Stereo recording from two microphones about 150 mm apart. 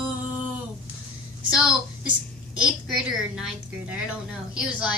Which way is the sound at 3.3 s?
5° right (ahead or behind).